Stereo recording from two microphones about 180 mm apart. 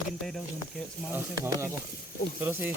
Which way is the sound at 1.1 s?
10° right (ahead or behind).